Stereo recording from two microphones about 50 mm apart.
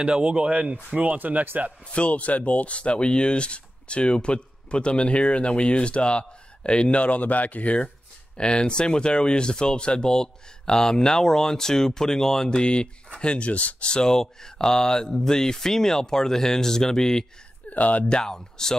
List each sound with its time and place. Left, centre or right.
0.0 s speech: right
1.9 s speech: left
17.6 s speech: left
18.1 s speech: centre